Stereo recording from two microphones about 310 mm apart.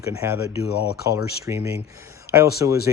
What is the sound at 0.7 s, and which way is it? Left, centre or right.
Speech, left.